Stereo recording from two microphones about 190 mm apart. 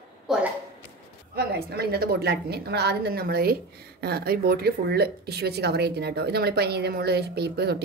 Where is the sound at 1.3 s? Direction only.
55° right (ahead or behind).